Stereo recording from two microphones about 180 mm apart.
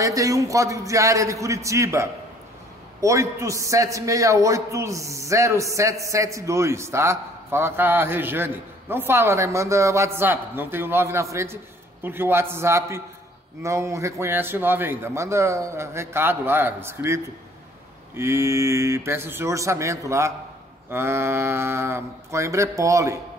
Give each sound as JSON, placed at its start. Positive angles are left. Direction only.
{"t": 0.0, "sound": "a man's voice", "side_deg": -20}